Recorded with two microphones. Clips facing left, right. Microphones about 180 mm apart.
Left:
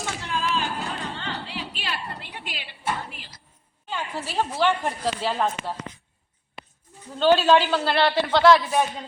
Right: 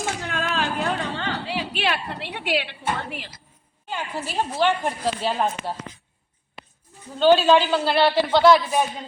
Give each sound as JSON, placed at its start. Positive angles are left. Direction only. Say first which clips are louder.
{"t": 0.0, "sound": "a sound", "louder": "right 2 dB", "side_deg": -55}
{"t": 3.8, "sound": "a woman's voice", "louder": "right 1 dB", "side_deg": -5}
{"t": 7.2, "sound": "a man's voice", "louder": "right 2 dB", "side_deg": 0}